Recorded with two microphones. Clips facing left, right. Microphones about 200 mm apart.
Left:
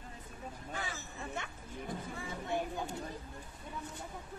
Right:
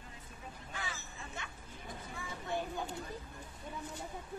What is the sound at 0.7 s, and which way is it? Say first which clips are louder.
Hubbub: left 2 dB; 45° left (ahead or behind).